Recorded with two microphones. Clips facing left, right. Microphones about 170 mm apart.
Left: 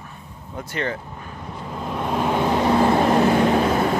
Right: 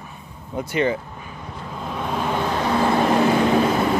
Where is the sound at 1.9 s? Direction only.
5° left (ahead or behind).